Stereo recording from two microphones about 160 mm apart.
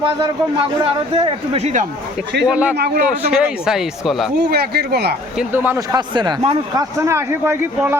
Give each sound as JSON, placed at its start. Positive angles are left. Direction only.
{"t": 0.0, "sound": "a man's voice", "side_deg": -30}
{"t": 2.4, "sound": "speech", "side_deg": -5}
{"t": 2.7, "sound": "speech", "side_deg": -90}
{"t": 3.1, "sound": "speech", "side_deg": -5}
{"t": 4.4, "sound": "speech", "side_deg": -85}
{"t": 5.4, "sound": "speech", "side_deg": -15}
{"t": 5.9, "sound": "speech", "side_deg": -30}
{"t": 6.7, "sound": "speech", "side_deg": -15}